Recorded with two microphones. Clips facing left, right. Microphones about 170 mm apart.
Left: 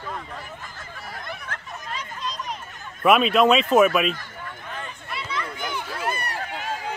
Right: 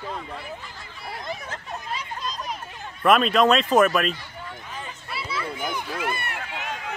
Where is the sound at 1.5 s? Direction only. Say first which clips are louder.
Even; 55° left (ahead or behind).